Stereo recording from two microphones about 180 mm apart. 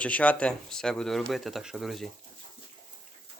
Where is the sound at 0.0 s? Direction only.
10° left (ahead or behind).